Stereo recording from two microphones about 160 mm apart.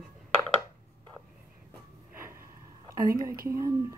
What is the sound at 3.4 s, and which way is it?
Speech, 20° right (ahead or behind).